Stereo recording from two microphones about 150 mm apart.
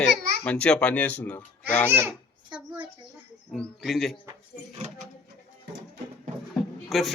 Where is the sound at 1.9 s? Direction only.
15° right (ahead or behind).